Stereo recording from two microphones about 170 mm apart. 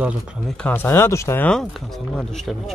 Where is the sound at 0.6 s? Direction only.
10° left (ahead or behind).